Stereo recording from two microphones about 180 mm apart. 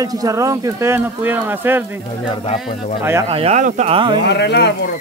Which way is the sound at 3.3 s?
35° right (ahead or behind).